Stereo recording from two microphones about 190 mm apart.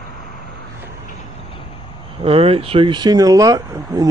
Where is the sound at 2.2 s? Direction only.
30° right (ahead or behind).